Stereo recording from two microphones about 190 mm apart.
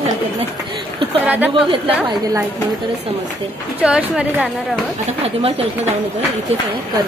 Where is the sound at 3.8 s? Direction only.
5° right (ahead or behind).